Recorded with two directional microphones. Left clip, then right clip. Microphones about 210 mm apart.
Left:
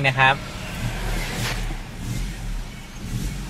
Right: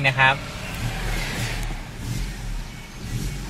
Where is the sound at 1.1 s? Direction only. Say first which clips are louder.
Right 1 dB; 40° left (ahead or behind).